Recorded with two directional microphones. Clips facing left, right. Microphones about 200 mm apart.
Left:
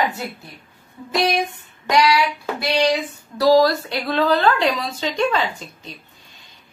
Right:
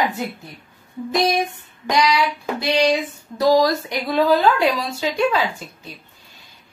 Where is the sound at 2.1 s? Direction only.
20° right (ahead or behind).